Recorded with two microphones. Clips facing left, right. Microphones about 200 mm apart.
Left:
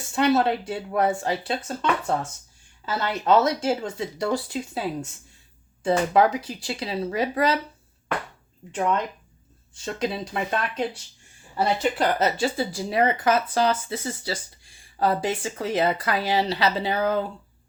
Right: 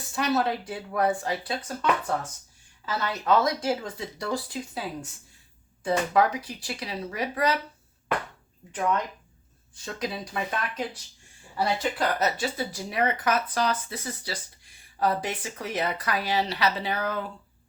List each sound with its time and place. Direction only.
0.1 s speech: 25° left (ahead or behind)
9.7 s speech: 25° left (ahead or behind)